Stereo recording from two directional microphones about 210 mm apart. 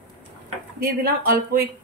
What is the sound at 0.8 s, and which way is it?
Speech, 45° right (ahead or behind).